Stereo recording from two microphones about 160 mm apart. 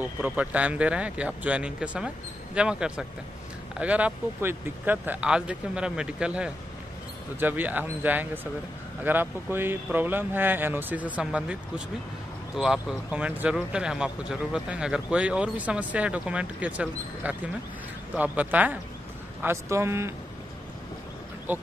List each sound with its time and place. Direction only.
0.0 s speech: 10° right (ahead or behind)
21.5 s speech: 10° right (ahead or behind)